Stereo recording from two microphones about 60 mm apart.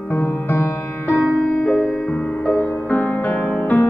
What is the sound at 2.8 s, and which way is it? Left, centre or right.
Music, left.